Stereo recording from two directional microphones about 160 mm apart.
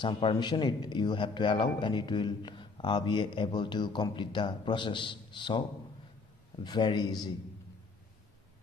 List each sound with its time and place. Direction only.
0.0 s a man's voice: 30° left (ahead or behind)
6.6 s a man's voice: 25° left (ahead or behind)